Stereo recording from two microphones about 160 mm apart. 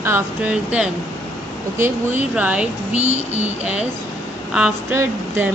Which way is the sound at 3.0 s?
40° right (ahead or behind).